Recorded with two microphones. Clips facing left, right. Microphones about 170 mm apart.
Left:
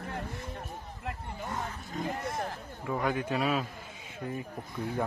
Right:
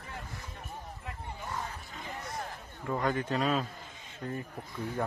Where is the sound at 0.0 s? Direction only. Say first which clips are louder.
Left 6 dB; 55° left (ahead or behind).